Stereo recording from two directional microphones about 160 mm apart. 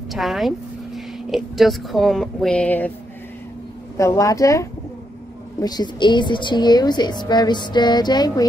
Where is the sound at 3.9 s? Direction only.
20° left (ahead or behind).